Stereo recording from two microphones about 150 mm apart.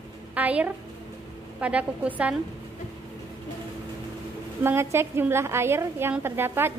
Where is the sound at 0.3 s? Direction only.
10° right (ahead or behind).